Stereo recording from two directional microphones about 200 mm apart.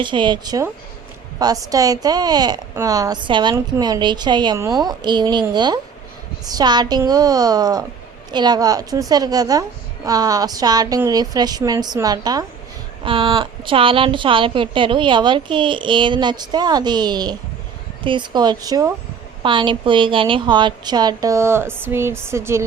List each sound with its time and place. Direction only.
0.0 s a woman's voice: 25° right (ahead or behind)